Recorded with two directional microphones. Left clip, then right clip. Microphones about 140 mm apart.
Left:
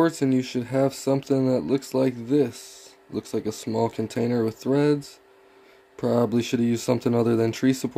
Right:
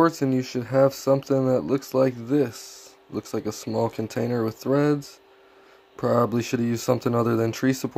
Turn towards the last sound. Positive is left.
turn(degrees=25)  # may be behind; listen again after turning